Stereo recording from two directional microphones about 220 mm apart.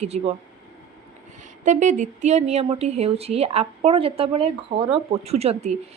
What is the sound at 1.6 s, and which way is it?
A woman's voice, 35° right (ahead or behind).